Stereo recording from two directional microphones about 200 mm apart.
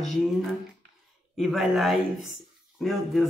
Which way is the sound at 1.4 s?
Centre (ahead or behind).